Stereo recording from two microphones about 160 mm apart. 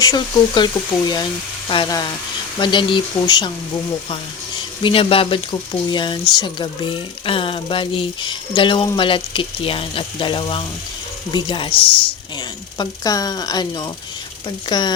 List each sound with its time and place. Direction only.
0.0 s speech: 25° left (ahead or behind)
4.8 s speech: 35° left (ahead or behind)